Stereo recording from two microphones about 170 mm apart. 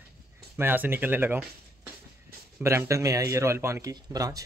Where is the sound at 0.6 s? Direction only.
15° right (ahead or behind).